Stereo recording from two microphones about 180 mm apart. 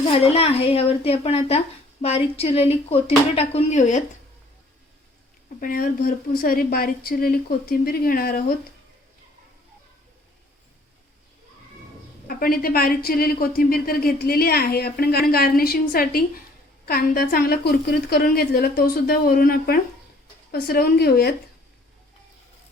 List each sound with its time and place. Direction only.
0.1 s speech: 30° left (ahead or behind)
5.5 s speech: 50° left (ahead or behind)
12.3 s speech: 55° left (ahead or behind)